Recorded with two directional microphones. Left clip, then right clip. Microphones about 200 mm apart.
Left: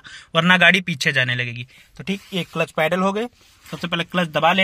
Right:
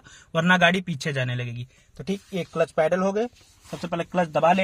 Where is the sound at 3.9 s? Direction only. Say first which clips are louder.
Left 3 dB; 15° left (ahead or behind).